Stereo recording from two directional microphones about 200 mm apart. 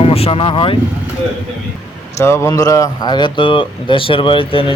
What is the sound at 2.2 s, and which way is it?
A man's voice, 15° left (ahead or behind).